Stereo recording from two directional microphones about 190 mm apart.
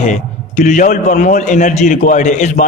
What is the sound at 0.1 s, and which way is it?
A man's voice, 40° left (ahead or behind).